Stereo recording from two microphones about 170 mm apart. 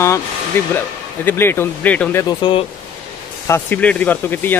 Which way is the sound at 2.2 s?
30° left (ahead or behind).